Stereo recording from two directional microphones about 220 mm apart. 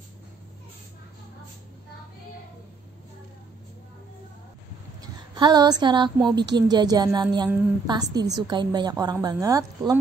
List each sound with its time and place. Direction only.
5.0 s a woman's voice: 20° right (ahead or behind)